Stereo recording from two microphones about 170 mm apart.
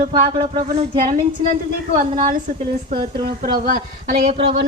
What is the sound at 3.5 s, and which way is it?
Speech, 55° right (ahead or behind).